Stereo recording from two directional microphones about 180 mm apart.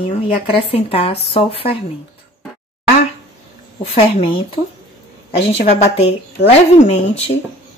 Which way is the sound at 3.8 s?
30° left (ahead or behind).